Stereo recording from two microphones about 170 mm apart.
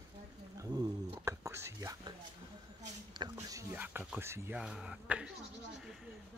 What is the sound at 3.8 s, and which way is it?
Speech, 10° right (ahead or behind).